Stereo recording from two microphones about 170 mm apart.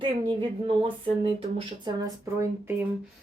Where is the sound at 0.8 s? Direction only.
30° right (ahead or behind).